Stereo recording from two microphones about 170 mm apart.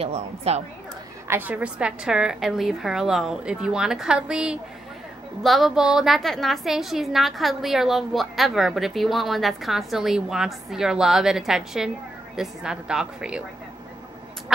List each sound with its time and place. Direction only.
0.0 s a woman's voice: 35° right (ahead or behind)
1.2 s a woman's voice: 10° right (ahead or behind)